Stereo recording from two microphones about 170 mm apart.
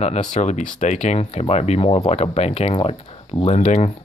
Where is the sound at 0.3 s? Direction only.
45° left (ahead or behind).